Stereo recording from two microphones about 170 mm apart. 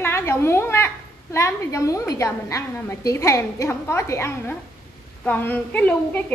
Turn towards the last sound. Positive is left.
turn(degrees=10)  # may be behind; listen again after turning